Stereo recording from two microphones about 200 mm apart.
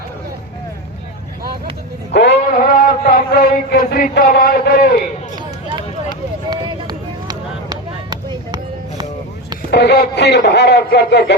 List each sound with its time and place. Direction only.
2.1 s mantra: 50° left (ahead or behind)
6.5 s a sound: 20° right (ahead or behind)
9.6 s a man's voice: 55° left (ahead or behind)